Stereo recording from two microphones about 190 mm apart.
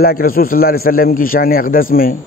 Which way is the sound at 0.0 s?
50° left (ahead or behind).